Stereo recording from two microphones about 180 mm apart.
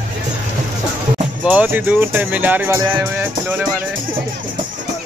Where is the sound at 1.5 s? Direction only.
10° right (ahead or behind).